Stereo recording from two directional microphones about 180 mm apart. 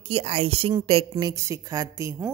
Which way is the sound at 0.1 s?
35° right (ahead or behind).